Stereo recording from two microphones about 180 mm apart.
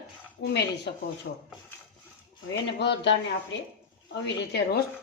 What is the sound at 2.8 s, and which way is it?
Speech, 75° left (ahead or behind).